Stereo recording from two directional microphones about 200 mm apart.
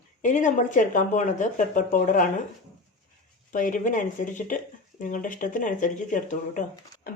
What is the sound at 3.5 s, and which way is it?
A woman's voice, 40° left (ahead or behind).